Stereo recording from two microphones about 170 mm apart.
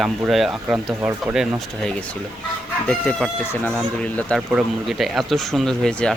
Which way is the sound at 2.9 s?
5° left (ahead or behind).